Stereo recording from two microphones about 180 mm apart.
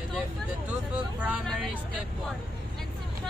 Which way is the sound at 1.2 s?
5° right (ahead or behind).